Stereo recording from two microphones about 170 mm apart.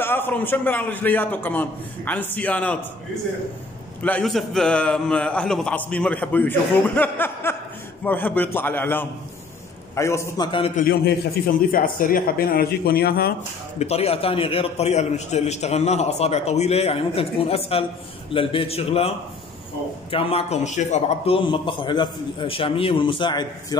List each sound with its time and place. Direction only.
0.0 s a man's voice: 10° left (ahead or behind)
4.0 s a man's voice: 5° left (ahead or behind); by 10.7 s 25° left (ahead or behind)
10.8 s speech: 65° left (ahead or behind)
13.7 s a man's voice: 35° left (ahead or behind)
21.5 s a man's voice: 30° left (ahead or behind)